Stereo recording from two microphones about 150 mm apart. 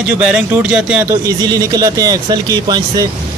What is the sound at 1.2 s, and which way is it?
Speech, 20° right (ahead or behind).